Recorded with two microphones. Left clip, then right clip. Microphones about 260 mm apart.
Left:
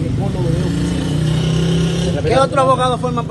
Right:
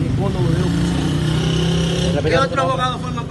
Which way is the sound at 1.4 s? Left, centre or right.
Right.